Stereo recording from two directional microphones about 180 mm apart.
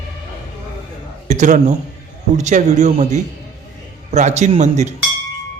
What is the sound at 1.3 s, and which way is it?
A man's voice, 45° right (ahead or behind).